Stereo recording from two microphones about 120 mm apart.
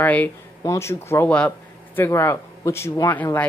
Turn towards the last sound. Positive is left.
turn(degrees=20)  # may be behind; listen again after turning